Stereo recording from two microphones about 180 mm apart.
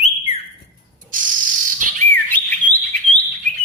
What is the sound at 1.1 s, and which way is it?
Bird, 50° right (ahead or behind).